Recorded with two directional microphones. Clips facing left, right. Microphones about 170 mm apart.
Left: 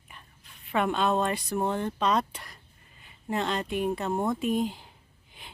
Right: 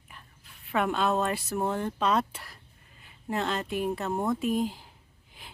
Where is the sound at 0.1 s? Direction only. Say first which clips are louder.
Even; centre (ahead or behind).